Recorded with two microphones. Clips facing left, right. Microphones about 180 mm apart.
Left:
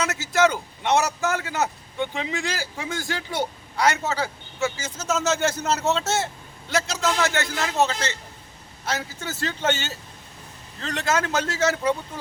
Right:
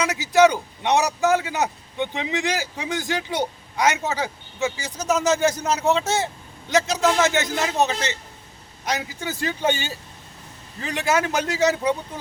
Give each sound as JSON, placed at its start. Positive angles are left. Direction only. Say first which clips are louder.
{"t": 0.0, "sound": "a man's voice", "louder": "right 4 dB", "side_deg": -15}